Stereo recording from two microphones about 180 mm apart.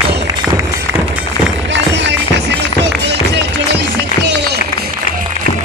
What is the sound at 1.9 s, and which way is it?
Music, 90° right.